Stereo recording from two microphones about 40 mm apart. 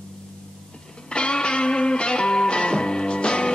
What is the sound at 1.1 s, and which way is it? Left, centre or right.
Music, left.